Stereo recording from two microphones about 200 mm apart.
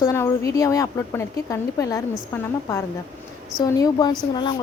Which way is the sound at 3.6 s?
15° left (ahead or behind).